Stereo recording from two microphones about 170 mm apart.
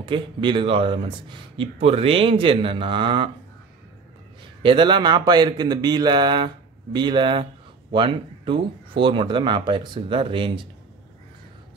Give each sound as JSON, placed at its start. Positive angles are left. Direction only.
{"t": 0.0, "sound": "speech", "side_deg": -30}
{"t": 4.6, "sound": "speech", "side_deg": -30}